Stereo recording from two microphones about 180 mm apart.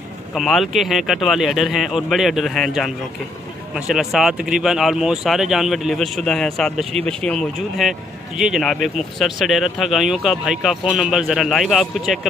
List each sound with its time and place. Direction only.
0.3 s speech: centre (ahead or behind)